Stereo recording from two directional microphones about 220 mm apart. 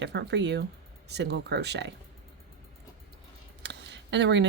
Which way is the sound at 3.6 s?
50° right (ahead or behind).